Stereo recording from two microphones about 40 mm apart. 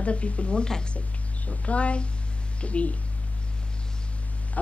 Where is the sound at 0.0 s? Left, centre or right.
Left.